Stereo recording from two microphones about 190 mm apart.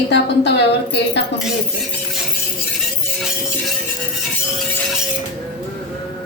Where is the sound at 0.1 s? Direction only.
65° left (ahead or behind).